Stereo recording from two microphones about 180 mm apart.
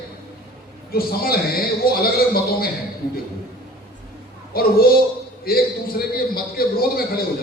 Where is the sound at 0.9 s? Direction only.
55° left (ahead or behind).